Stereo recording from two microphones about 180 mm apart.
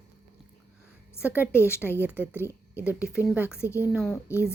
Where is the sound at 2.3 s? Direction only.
15° left (ahead or behind).